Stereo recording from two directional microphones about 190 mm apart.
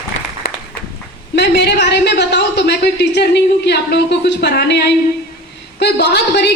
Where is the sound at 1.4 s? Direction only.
60° left (ahead or behind).